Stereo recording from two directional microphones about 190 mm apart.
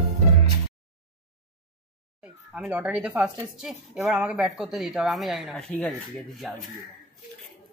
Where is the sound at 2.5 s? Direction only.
5° right (ahead or behind).